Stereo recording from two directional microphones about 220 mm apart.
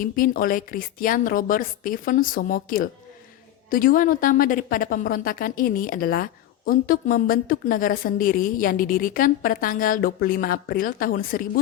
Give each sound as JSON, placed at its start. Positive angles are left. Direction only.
{"t": 0.0, "sound": "a woman's voice", "side_deg": 40}